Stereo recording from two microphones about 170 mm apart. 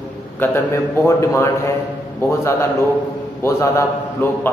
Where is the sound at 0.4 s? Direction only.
10° left (ahead or behind).